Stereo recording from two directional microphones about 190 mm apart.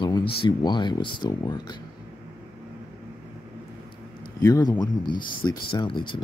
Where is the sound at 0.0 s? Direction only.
20° left (ahead or behind).